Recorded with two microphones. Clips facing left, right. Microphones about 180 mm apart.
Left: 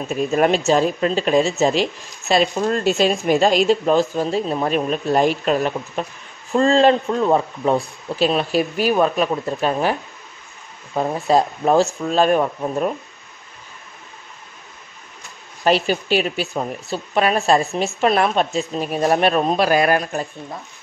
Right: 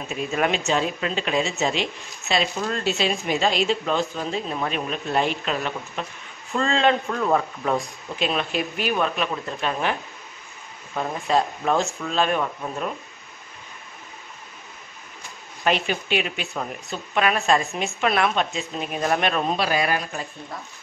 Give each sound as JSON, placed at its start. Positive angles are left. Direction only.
{"t": 0.1, "sound": "speech", "side_deg": 45}
{"t": 11.0, "sound": "speech", "side_deg": 35}
{"t": 15.6, "sound": "speech", "side_deg": 35}